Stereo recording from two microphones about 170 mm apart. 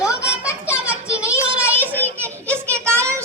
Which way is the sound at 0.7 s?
5° right (ahead or behind).